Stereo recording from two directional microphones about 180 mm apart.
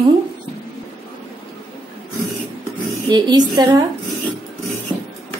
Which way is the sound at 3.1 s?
25° right (ahead or behind).